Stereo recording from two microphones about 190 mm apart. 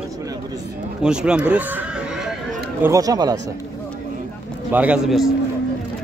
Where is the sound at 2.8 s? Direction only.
15° right (ahead or behind).